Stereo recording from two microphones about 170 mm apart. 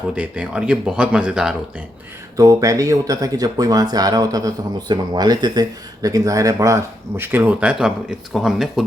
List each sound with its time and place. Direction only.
0.1 s speech: 5° right (ahead or behind)
2.3 s speech: 20° right (ahead or behind); by 8.8 s centre (ahead or behind)